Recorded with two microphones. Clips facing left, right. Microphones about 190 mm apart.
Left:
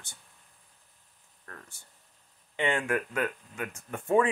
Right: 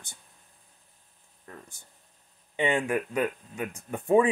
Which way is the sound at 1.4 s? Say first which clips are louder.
Right 3 dB; 15° right (ahead or behind).